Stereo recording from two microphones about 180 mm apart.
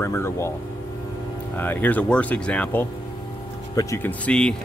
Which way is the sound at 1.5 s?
10° left (ahead or behind).